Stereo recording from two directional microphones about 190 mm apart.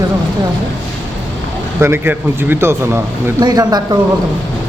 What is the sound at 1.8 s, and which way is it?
Speech, 10° right (ahead or behind).